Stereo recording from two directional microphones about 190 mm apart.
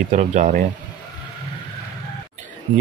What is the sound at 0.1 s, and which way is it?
Speech, 40° right (ahead or behind).